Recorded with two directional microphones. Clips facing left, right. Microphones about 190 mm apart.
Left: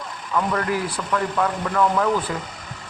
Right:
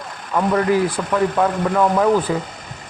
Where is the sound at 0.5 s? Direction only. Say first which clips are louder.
Right 7 dB; 20° right (ahead or behind).